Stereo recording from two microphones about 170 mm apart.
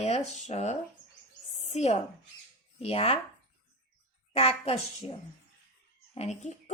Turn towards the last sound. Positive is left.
turn(degrees=45)  # may be behind; listen again after turning